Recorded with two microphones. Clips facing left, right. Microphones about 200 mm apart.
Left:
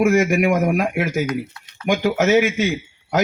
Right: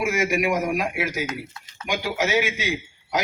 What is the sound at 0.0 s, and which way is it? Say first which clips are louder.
Speech: left 7 dB; 50° left (ahead or behind).